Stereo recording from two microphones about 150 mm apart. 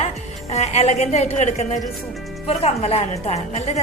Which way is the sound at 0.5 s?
45° left (ahead or behind).